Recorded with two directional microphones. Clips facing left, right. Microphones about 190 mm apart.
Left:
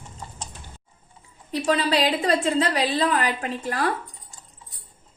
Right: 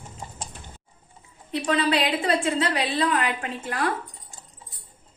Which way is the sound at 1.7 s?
35° left (ahead or behind).